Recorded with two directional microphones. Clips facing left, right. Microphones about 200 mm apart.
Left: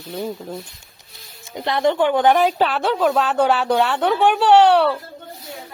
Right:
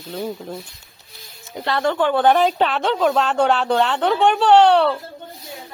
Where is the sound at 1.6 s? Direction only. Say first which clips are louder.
Left 2 dB; 20° left (ahead or behind).